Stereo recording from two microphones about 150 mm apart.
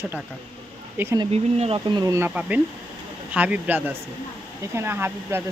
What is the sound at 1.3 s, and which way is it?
Speech, 40° right (ahead or behind).